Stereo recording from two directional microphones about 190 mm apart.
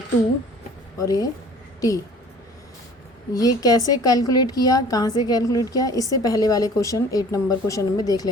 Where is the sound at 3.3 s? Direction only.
20° left (ahead or behind).